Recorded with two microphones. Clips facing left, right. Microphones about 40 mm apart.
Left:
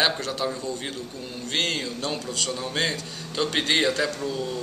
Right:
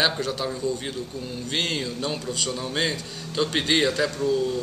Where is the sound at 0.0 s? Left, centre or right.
Centre.